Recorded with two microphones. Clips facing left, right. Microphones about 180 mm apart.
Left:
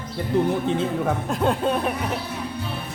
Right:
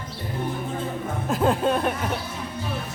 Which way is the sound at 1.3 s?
Centre (ahead or behind).